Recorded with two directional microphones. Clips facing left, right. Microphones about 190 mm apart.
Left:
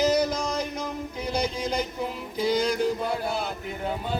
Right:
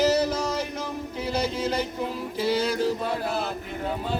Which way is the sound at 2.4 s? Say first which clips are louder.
Left 1 dB; 5° right (ahead or behind).